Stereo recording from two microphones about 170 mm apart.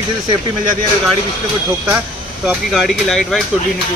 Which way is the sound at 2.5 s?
Centre (ahead or behind).